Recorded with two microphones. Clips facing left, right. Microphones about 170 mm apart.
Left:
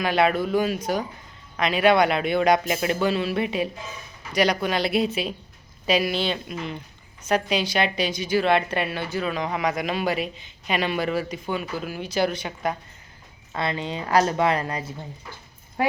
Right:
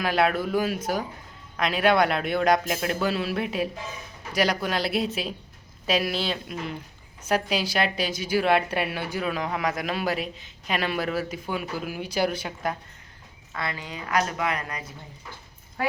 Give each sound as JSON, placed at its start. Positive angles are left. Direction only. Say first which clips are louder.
{"t": 0.0, "sound": "a woman's voice", "louder": "left 2 dB", "side_deg": 0}
{"t": 13.5, "sound": "speech", "louder": "left 6 dB", "side_deg": 25}